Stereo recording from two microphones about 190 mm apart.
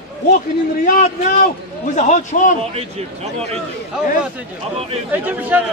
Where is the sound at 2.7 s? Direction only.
35° right (ahead or behind).